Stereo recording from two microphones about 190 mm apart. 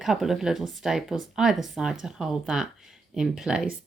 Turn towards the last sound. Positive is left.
turn(degrees=-5)  # may be behind; listen again after turning